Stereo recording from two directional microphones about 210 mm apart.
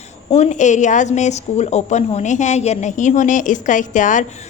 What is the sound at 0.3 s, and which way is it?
A woman's voice, 30° left (ahead or behind).